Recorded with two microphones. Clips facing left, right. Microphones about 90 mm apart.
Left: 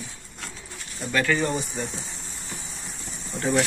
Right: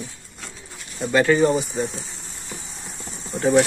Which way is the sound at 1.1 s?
25° right (ahead or behind).